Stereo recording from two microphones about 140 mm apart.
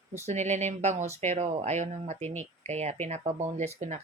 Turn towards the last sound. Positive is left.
turn(degrees=-55)  # may be behind; listen again after turning